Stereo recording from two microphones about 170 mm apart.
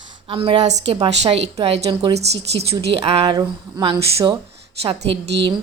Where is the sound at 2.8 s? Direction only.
35° right (ahead or behind).